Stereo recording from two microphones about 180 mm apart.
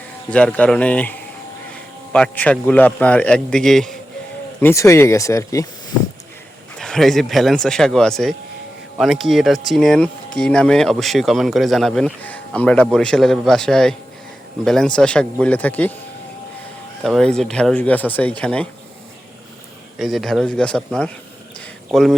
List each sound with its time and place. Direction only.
0.3 s speech: 5° left (ahead or behind)
4.6 s speech: 15° left (ahead or behind)
6.7 s speech: 5° left (ahead or behind)
17.0 s speech: centre (ahead or behind)
20.0 s speech: centre (ahead or behind)